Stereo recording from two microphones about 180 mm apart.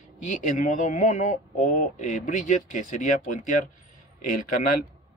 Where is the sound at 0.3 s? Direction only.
45° left (ahead or behind).